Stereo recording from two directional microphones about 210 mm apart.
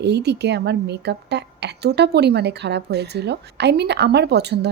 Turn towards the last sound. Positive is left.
turn(degrees=-55)  # may be behind; listen again after turning